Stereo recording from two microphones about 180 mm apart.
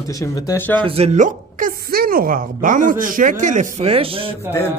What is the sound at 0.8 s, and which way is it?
A woman's voice, 35° right (ahead or behind).